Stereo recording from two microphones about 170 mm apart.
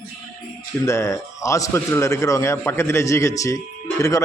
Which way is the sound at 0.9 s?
15° left (ahead or behind).